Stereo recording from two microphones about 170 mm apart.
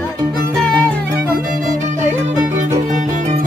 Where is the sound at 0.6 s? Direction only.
5° left (ahead or behind).